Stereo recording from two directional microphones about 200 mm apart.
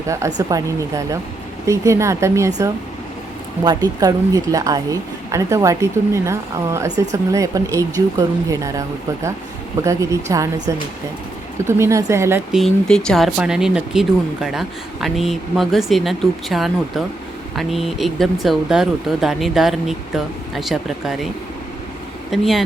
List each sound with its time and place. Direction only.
0.1 s speech: 15° right (ahead or behind)
3.6 s speech: 20° right (ahead or behind)
9.8 s speech: 15° right (ahead or behind)
12.5 s speech: centre (ahead or behind)
22.3 s speech: centre (ahead or behind)